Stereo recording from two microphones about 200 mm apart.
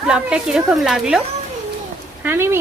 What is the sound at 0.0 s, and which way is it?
A woman's voice, 5° right (ahead or behind).